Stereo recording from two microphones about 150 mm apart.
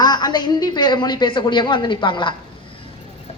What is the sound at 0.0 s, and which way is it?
A woman's voice, 30° left (ahead or behind).